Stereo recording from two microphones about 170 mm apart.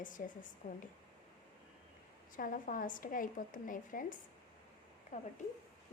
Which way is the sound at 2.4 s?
55° left (ahead or behind).